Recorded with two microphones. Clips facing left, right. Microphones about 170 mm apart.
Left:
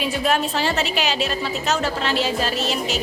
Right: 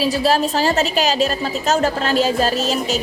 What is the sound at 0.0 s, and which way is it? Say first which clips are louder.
A woman's voice: right 4 dB; 35° right (ahead or behind).